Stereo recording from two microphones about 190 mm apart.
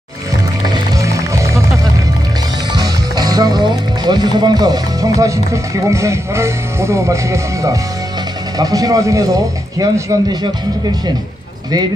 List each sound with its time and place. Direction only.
0.9 s music: 15° right (ahead or behind)
2.7 s speech: 20° right (ahead or behind)